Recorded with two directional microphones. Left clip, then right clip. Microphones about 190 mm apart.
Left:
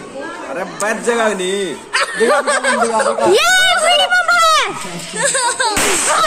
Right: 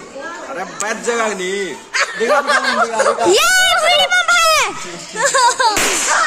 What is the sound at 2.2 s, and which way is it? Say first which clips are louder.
Speech: right 1 dB; 50° left (ahead or behind).